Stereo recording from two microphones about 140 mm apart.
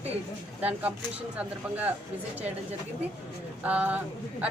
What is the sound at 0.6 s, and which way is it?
Speech, 10° right (ahead or behind).